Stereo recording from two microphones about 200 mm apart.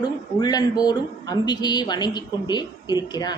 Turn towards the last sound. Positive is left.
turn(degrees=20)  # may be behind; listen again after turning